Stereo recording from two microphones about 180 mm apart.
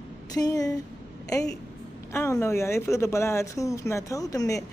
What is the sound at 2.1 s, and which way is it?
Speech, 15° left (ahead or behind).